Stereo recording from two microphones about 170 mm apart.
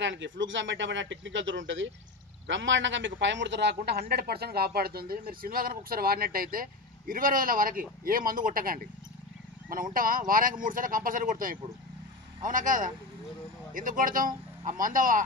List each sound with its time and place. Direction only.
0.0 s a man's voice: 90° right; by 15.2 s 50° right (ahead or behind)